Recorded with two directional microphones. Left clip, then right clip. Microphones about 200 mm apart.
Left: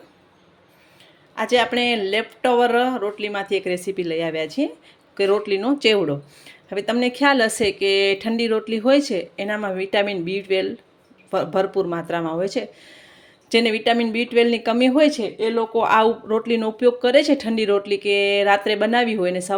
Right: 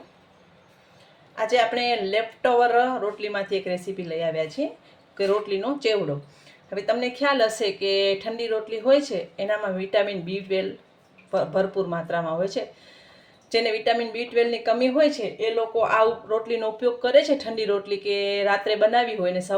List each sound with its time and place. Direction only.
1.4 s speech: 45° left (ahead or behind)